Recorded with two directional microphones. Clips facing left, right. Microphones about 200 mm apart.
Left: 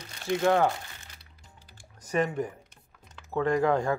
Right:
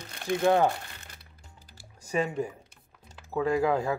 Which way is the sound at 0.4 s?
15° right (ahead or behind).